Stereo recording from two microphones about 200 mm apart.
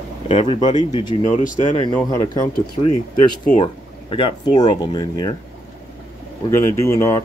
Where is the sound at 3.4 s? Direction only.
35° left (ahead or behind); by 5.3 s 20° left (ahead or behind).